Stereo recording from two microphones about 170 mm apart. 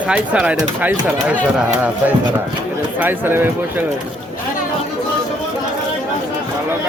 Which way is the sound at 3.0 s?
10° right (ahead or behind).